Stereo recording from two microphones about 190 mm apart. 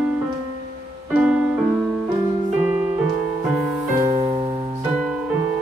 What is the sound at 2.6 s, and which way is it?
Music, 10° right (ahead or behind).